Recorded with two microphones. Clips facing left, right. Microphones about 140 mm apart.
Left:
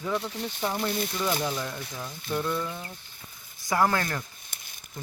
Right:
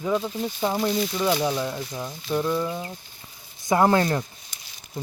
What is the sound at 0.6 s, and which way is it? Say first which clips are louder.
Speech: right 5 dB; 30° right (ahead or behind).